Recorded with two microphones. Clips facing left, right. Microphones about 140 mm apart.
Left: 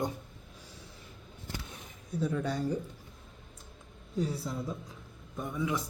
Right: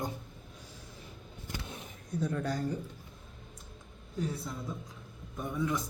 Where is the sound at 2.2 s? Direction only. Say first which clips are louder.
Left 2 dB; centre (ahead or behind).